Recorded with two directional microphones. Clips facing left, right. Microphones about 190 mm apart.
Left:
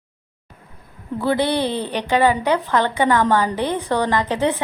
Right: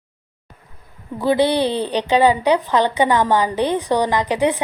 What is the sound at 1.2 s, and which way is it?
A woman's voice, 15° right (ahead or behind).